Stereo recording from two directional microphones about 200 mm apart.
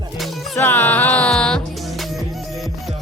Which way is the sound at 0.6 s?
10° left (ahead or behind).